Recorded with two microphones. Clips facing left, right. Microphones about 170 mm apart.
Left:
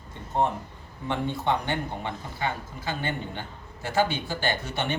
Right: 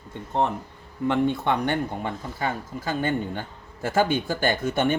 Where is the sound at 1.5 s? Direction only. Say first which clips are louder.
Right 3 dB; 55° right (ahead or behind).